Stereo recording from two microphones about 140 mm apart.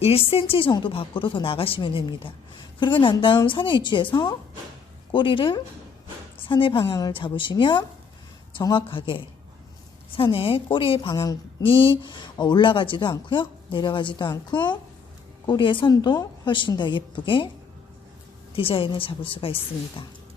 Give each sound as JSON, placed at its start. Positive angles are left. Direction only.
{"t": 0.0, "sound": "a woman's voice", "side_deg": 45}
{"t": 18.5, "sound": "speech", "side_deg": 40}